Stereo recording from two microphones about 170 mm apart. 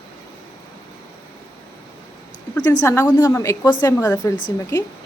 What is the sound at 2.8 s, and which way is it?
A woman's voice, 15° left (ahead or behind).